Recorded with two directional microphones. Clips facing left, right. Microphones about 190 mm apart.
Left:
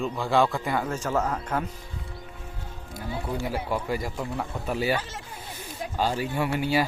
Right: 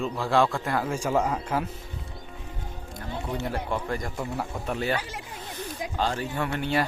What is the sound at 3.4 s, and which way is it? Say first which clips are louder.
Speech: left 1 dB; 5° left (ahead or behind).